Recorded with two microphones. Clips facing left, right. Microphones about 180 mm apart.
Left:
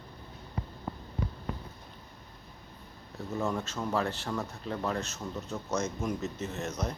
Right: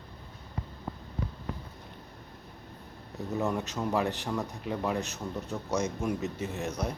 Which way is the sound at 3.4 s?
15° right (ahead or behind).